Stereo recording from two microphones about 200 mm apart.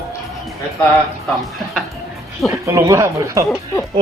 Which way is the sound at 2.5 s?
15° right (ahead or behind).